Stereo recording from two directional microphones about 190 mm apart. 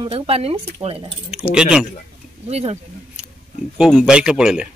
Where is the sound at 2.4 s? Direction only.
35° right (ahead or behind).